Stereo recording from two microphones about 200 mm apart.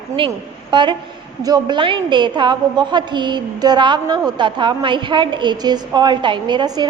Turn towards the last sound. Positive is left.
turn(degrees=-20)  # may be behind; listen again after turning